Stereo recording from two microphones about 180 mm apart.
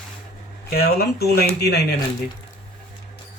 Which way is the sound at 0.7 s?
60° left (ahead or behind).